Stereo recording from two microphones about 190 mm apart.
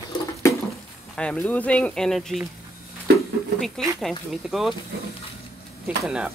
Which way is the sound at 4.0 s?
Centre (ahead or behind).